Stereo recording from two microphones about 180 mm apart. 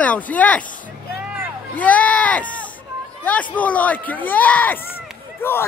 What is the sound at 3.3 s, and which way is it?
Speech, 10° left (ahead or behind).